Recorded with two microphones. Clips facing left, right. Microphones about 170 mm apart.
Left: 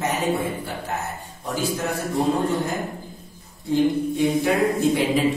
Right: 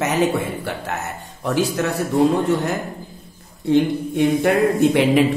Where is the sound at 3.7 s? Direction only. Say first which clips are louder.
Right 3 dB; 60° right (ahead or behind).